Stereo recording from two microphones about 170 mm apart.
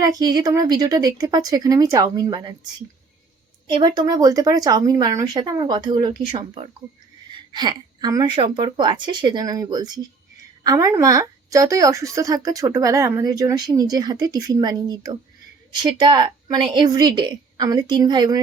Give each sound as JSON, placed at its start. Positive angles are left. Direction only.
{"t": 0.0, "sound": "a woman's voice", "side_deg": -20}
{"t": 3.8, "sound": "a woman's voice", "side_deg": -25}